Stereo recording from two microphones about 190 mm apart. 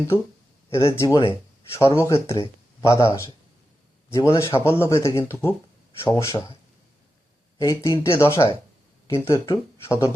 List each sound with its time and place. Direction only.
0.7 s speech: 15° left (ahead or behind)
7.6 s speech: 15° left (ahead or behind)